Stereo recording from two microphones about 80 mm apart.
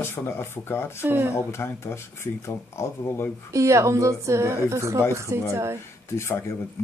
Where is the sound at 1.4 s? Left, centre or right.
Left.